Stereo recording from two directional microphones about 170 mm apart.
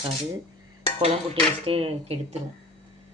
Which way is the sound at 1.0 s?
35° right (ahead or behind).